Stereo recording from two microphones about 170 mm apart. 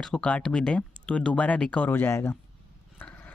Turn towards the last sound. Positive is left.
turn(degrees=10)  # may be behind; listen again after turning